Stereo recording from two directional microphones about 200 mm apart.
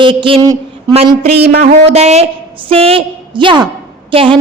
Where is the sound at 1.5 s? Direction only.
30° right (ahead or behind).